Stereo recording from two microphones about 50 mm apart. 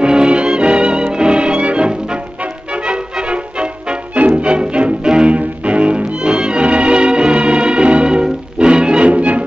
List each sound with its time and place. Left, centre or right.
0.0 s music: centre